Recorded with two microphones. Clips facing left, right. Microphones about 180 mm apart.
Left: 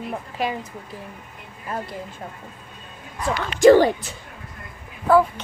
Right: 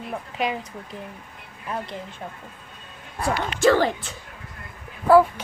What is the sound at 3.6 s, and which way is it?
Speech, 15° left (ahead or behind).